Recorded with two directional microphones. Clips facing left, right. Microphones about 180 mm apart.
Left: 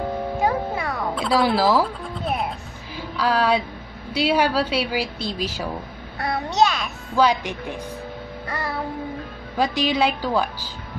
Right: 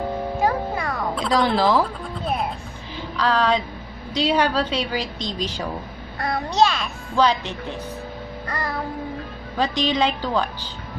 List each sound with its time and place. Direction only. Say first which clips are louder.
0.5 s music: even; 5° left (ahead or behind)
3.0 s a sound: even; 10° left (ahead or behind)
4.1 s a woman's voice: even; 10° left (ahead or behind)
6.2 s a woman's voice: right 1 dB; 20° left (ahead or behind)
9.6 s a woman's voice: left 1 dB; 10° left (ahead or behind)